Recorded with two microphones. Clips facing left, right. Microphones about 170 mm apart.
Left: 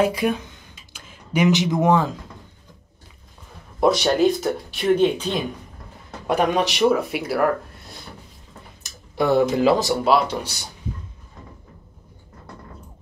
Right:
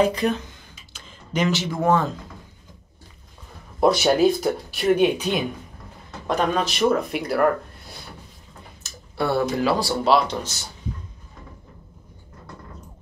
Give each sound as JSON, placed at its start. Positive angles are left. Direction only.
{"t": 0.0, "sound": "speech", "side_deg": 10}
{"t": 0.9, "sound": "a sound", "side_deg": 10}
{"t": 3.8, "sound": "speech", "side_deg": -5}
{"t": 6.2, "sound": "speech", "side_deg": 10}
{"t": 9.1, "sound": "speech", "side_deg": 15}
{"t": 10.0, "sound": "speech", "side_deg": 5}